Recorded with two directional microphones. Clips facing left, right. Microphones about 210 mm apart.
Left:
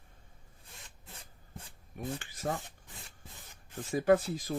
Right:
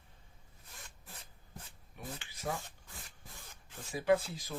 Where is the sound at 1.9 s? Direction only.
50° left (ahead or behind).